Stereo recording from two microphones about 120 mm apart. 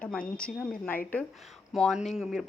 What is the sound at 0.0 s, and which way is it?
Speech, 10° left (ahead or behind).